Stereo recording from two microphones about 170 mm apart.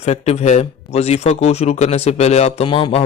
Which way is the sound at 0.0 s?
40° left (ahead or behind).